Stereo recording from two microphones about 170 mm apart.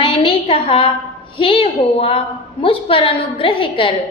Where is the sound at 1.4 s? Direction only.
30° left (ahead or behind).